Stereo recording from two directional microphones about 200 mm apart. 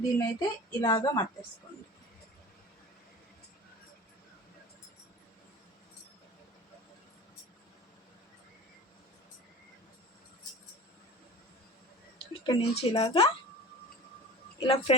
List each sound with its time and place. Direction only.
0.2 s a woman's voice: 20° left (ahead or behind)
12.2 s speech: 25° left (ahead or behind)
14.6 s a woman's voice: 30° left (ahead or behind)